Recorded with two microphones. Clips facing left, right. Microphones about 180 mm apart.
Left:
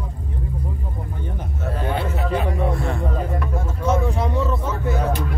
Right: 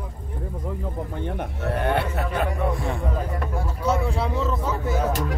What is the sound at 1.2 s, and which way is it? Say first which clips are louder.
Speech: right 2 dB; 65° right (ahead or behind).